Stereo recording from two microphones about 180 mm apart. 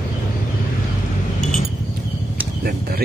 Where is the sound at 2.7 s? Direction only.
55° right (ahead or behind).